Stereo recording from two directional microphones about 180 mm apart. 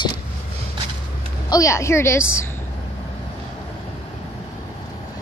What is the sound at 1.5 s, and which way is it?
Speech, 15° left (ahead or behind).